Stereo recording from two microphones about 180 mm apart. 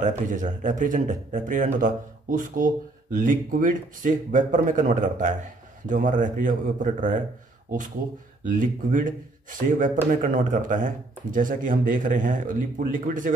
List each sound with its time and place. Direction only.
0.3 s a man's voice: 45° right (ahead or behind)
8.5 s a man's voice: 45° right (ahead or behind)